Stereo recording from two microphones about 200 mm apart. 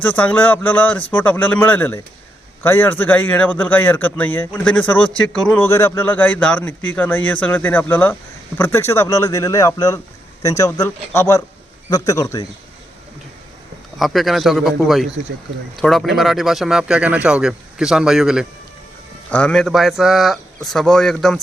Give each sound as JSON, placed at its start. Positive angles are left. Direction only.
{"t": 0.0, "sound": "a man's voice", "side_deg": 5}
{"t": 14.0, "sound": "speech", "side_deg": 0}